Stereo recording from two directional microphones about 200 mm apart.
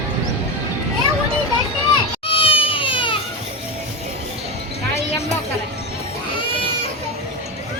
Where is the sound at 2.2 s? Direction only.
25° left (ahead or behind).